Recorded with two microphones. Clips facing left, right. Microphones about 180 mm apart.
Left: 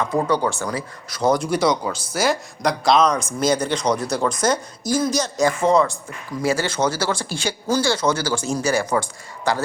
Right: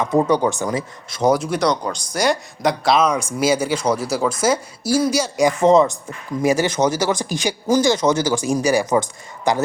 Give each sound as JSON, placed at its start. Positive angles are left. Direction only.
{"t": 0.0, "sound": "speech", "side_deg": -20}
{"t": 1.3, "sound": "speech", "side_deg": 0}